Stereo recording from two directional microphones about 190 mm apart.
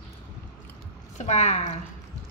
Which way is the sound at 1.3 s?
35° left (ahead or behind).